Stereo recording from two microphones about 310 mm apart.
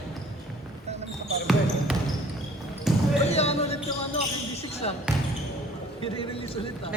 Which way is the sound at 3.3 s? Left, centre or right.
Centre.